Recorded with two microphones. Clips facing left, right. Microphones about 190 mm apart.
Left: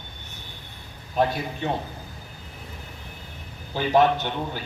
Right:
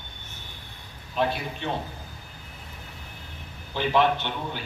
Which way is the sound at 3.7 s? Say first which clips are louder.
Left 3 dB; 45° left (ahead or behind).